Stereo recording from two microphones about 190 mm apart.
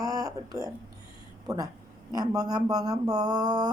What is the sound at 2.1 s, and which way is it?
A woman's voice, 20° right (ahead or behind).